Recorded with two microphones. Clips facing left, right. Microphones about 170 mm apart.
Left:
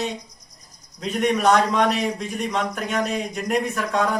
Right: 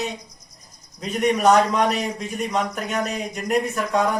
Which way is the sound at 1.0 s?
5° right (ahead or behind).